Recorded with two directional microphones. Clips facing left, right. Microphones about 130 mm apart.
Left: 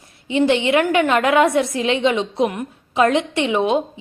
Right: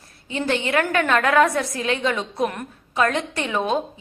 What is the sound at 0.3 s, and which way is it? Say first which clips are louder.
A woman's voice: left 7 dB; 20° left (ahead or behind).